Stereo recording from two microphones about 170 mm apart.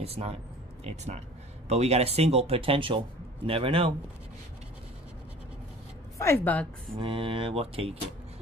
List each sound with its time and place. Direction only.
0.0 s speech: 35° right (ahead or behind)
6.1 s a woman's voice: 15° left (ahead or behind)
7.0 s speech: 30° right (ahead or behind)